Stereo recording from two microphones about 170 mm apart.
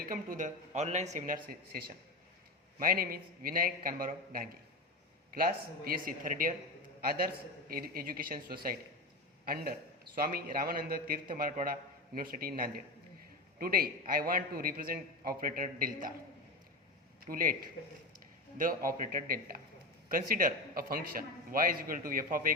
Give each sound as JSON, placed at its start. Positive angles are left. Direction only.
{"t": 0.0, "sound": "a man's voice", "side_deg": -55}
{"t": 7.7, "sound": "a man's voice", "side_deg": -55}
{"t": 17.2, "sound": "a man's voice", "side_deg": -55}